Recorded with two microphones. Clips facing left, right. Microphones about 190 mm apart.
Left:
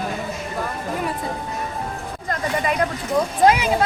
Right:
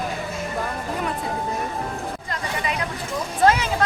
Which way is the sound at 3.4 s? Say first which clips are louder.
Left 1 dB; 10° left (ahead or behind).